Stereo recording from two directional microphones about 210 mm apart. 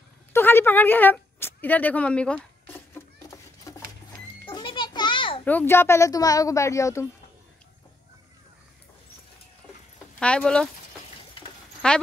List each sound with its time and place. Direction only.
0.3 s a sound: 10° left (ahead or behind)
4.5 s children playing: 25° left (ahead or behind)
5.4 s speech: 10° left (ahead or behind)
10.1 s speech: 5° left (ahead or behind)
11.8 s speech: 5° left (ahead or behind)